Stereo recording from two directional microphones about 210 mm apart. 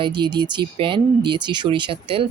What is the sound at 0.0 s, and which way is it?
Speech, 20° right (ahead or behind).